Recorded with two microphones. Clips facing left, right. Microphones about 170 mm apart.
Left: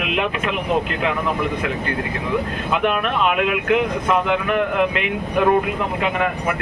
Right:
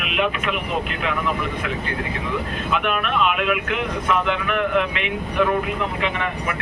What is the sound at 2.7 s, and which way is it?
Speech, 40° left (ahead or behind).